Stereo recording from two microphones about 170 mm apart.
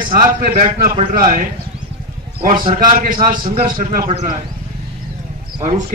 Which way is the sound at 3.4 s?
30° right (ahead or behind).